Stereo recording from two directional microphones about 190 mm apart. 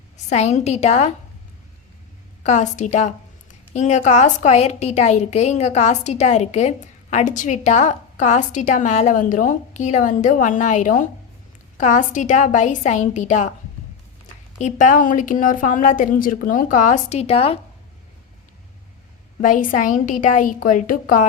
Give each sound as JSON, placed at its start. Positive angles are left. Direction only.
{"t": 0.3, "sound": "a woman's voice", "side_deg": 35}
{"t": 2.4, "sound": "a woman's voice", "side_deg": 40}
{"t": 14.6, "sound": "a woman's voice", "side_deg": 40}
{"t": 19.4, "sound": "a woman's voice", "side_deg": 45}